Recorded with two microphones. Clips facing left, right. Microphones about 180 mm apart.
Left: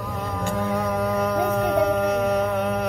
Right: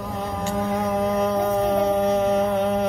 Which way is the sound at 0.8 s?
20° right (ahead or behind).